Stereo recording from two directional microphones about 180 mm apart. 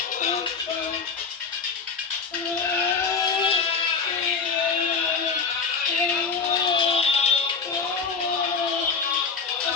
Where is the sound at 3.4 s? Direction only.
35° left (ahead or behind).